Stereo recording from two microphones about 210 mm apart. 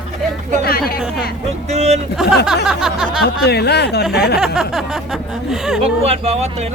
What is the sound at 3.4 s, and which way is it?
Speech, 50° left (ahead or behind).